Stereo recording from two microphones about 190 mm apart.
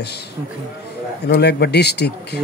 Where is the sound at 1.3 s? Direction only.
60° left (ahead or behind).